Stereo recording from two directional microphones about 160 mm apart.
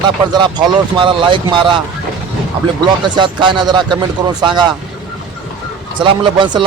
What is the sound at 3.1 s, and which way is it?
Speech, 30° right (ahead or behind).